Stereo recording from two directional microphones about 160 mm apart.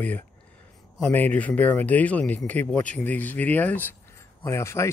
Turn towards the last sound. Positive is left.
turn(degrees=15)  # may be behind; listen again after turning